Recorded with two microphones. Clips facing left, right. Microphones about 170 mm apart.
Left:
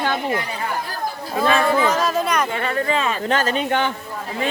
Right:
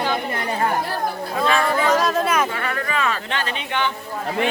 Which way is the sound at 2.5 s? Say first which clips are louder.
Left 4 dB; 25° left (ahead or behind).